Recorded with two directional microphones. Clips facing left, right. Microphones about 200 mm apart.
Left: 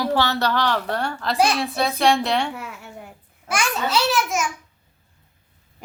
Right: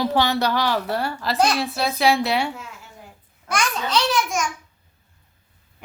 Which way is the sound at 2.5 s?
65° left (ahead or behind).